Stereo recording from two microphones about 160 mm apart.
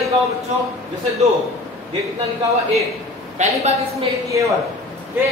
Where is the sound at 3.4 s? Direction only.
45° right (ahead or behind).